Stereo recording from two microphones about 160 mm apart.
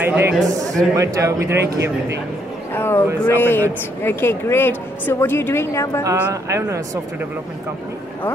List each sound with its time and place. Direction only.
0.0 s speech: 10° right (ahead or behind)
2.7 s a man's voice: 15° left (ahead or behind)
6.1 s speech: 15° right (ahead or behind)